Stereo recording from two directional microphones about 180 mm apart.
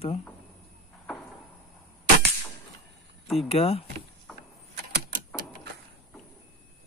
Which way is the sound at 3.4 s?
35° left (ahead or behind).